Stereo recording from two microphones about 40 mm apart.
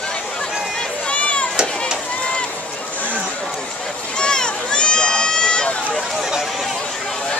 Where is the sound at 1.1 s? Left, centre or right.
Left.